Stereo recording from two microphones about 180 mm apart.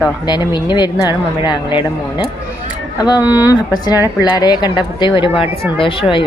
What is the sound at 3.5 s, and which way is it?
Speech, 20° left (ahead or behind).